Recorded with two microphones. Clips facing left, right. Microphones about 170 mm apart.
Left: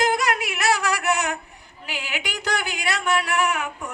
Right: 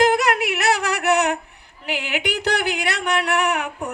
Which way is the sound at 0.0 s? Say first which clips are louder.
Right 5 dB; 65° right (ahead or behind).